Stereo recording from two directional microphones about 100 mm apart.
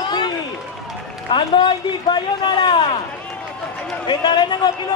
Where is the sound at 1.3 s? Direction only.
55° left (ahead or behind).